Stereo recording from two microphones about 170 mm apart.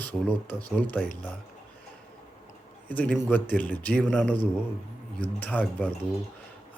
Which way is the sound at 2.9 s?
10° left (ahead or behind).